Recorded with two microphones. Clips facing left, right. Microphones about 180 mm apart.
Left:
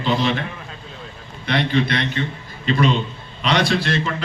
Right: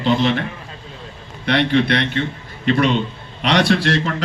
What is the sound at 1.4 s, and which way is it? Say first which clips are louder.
A man's voice: right 3 dB; 70° right (ahead or behind).